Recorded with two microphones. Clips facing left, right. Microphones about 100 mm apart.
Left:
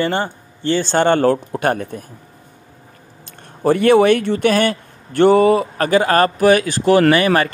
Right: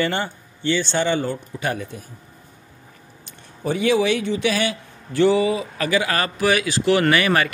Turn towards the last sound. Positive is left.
turn(degrees=35)  # may be behind; listen again after turning